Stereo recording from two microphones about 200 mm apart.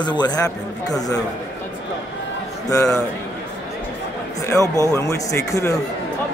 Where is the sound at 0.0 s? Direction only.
20° left (ahead or behind).